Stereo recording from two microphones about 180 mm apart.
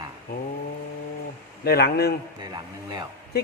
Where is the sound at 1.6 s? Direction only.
60° left (ahead or behind).